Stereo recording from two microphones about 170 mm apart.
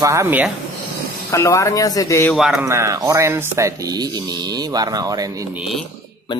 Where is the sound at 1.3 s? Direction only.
15° left (ahead or behind).